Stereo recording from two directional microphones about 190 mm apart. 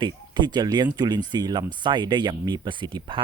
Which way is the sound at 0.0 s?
20° right (ahead or behind).